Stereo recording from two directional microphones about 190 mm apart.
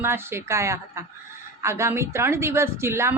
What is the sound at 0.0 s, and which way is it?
A woman's voice, 10° right (ahead or behind).